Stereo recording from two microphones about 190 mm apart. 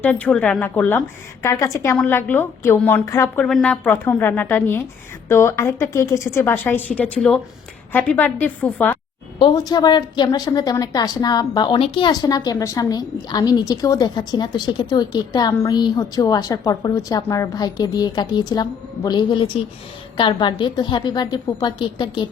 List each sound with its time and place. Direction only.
0.0 s a woman's voice: 10° left (ahead or behind)
9.4 s a woman's voice: 20° left (ahead or behind)